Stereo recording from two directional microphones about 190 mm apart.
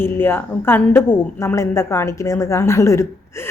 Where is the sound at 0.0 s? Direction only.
10° left (ahead or behind).